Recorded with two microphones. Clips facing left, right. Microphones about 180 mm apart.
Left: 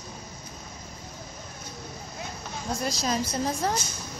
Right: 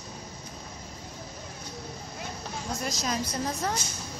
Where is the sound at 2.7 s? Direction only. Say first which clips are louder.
Left 4 dB; 30° left (ahead or behind).